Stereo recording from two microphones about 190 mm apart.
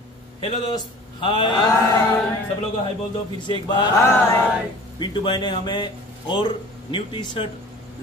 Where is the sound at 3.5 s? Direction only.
25° left (ahead or behind).